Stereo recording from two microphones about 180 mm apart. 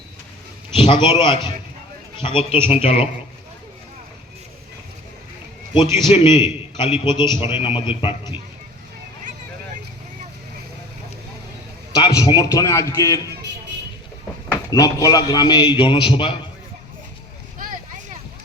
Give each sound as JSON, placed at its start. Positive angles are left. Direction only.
{"t": 0.7, "sound": "a man's voice", "side_deg": 30}
{"t": 6.1, "sound": "a man's voice", "side_deg": 25}
{"t": 11.9, "sound": "a man's voice", "side_deg": 20}
{"t": 14.7, "sound": "a man's voice", "side_deg": 20}